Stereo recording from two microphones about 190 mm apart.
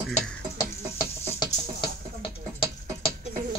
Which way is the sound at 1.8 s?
30° left (ahead or behind).